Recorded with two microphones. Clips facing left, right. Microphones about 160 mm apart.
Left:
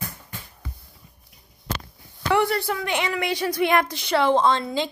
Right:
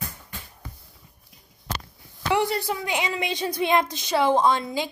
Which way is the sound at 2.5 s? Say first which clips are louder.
Left 2 dB; 15° right (ahead or behind).